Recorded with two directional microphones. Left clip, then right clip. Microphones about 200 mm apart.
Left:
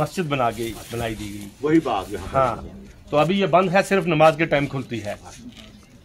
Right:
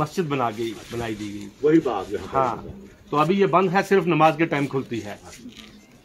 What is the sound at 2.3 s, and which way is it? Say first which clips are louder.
A man's voice: left 3 dB; 15° left (ahead or behind).